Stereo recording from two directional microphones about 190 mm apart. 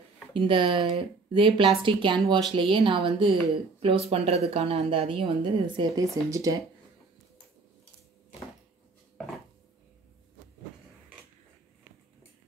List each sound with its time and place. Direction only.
0.3 s speech: 25° right (ahead or behind)